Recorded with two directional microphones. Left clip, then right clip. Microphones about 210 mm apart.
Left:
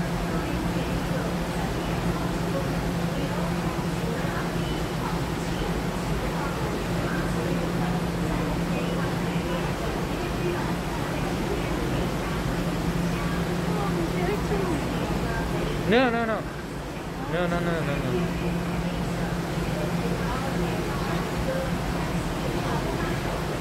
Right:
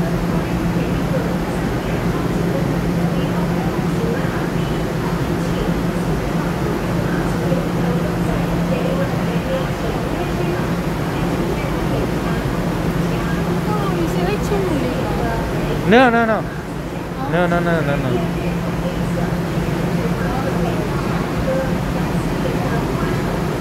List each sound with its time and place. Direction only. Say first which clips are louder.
15.9 s vehicle: right 10 dB; 15° right (ahead or behind)